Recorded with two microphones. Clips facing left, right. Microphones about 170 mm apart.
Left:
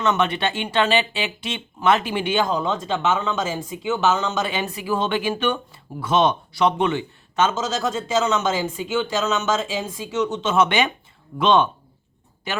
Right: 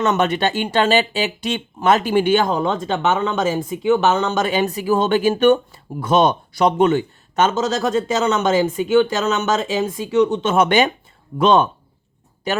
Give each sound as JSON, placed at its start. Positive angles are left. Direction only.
{"t": 0.0, "sound": "a man's voice", "side_deg": -45}